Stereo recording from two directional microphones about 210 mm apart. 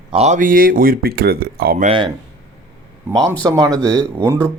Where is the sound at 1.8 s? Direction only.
25° right (ahead or behind).